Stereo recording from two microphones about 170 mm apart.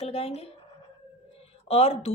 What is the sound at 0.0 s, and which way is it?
Speech, 35° left (ahead or behind).